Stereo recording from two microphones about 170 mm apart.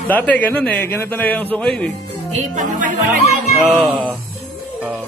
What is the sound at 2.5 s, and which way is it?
Music, 50° right (ahead or behind).